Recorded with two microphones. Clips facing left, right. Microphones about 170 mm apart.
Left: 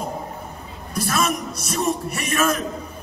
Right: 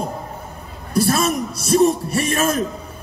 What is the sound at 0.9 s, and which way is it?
A man's voice, 35° right (ahead or behind).